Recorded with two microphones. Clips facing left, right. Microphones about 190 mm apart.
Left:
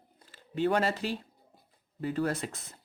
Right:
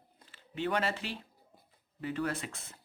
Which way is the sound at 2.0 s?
40° left (ahead or behind).